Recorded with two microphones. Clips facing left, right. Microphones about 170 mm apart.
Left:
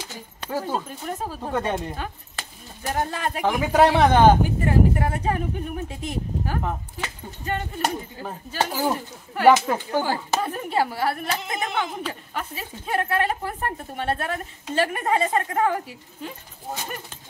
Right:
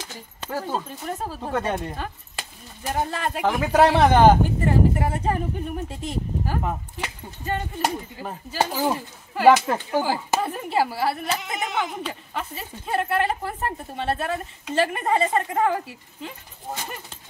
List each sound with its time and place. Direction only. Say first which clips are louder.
0.4 s speech: left 1 dB; 5° left (ahead or behind)